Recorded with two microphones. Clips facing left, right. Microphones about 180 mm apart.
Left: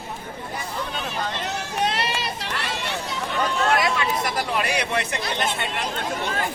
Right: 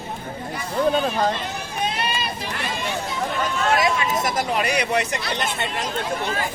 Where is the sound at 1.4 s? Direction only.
80° left.